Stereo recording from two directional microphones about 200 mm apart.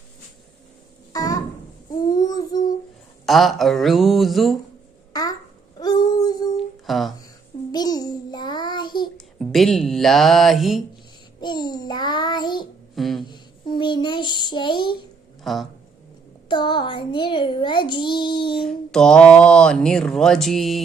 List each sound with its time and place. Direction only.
1.1 s a sound: 20° left (ahead or behind)
3.2 s speech: centre (ahead or behind)
5.8 s a sound: 20° left (ahead or behind)
6.8 s speech: centre (ahead or behind)
7.7 s child singing: 20° left (ahead or behind)
9.1 s speech: centre (ahead or behind)
11.3 s child singing: 20° left (ahead or behind)
13.0 s a sound: centre (ahead or behind)
13.2 s child singing: 20° left (ahead or behind)
15.5 s speech: centre (ahead or behind)
16.5 s child singing: 25° left (ahead or behind)
18.5 s speech: centre (ahead or behind)